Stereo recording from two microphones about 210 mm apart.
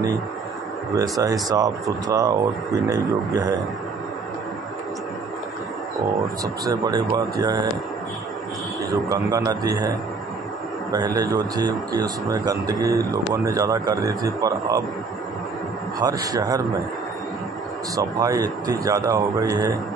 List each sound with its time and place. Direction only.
0.9 s speech: 15° right (ahead or behind)
6.4 s speech: 15° right (ahead or behind)
9.1 s speech: 15° right (ahead or behind)
16.0 s speech: 15° right (ahead or behind)
17.9 s speech: 15° right (ahead or behind)